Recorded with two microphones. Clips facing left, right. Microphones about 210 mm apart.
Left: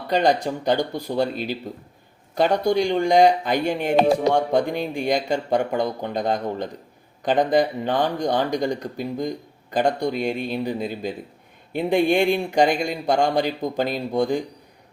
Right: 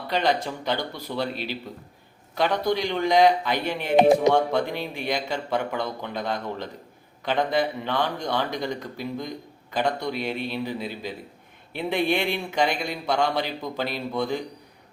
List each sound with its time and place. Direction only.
0.1 s speech: 50° left (ahead or behind)